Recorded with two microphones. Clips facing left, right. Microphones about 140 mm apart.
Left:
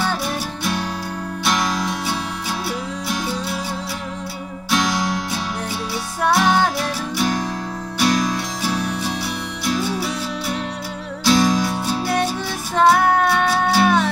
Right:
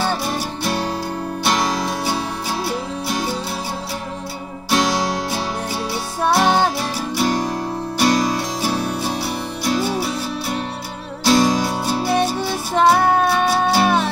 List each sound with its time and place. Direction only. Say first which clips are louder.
1.4 s music: right 1 dB; 30° right (ahead or behind)
4.6 s music: right 2 dB; 35° right (ahead or behind)
11.2 s music: right 1 dB; 30° right (ahead or behind)
13.1 s music: right 1 dB; 10° right (ahead or behind)